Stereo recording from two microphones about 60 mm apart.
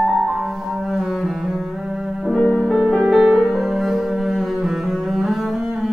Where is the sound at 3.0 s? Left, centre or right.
Centre.